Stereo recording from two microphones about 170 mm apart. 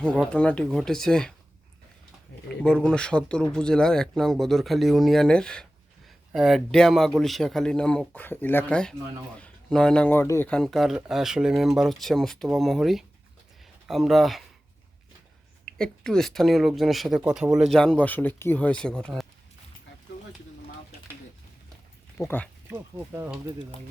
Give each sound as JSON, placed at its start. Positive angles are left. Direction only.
{"t": 0.3, "sound": "speech", "side_deg": 5}
{"t": 2.3, "sound": "a sound", "side_deg": 75}
{"t": 2.6, "sound": "speech", "side_deg": 5}
{"t": 10.5, "sound": "speech", "side_deg": 0}
{"t": 15.6, "sound": "speech", "side_deg": 5}
{"t": 22.2, "sound": "speech", "side_deg": 10}
{"t": 22.7, "sound": "speech", "side_deg": -10}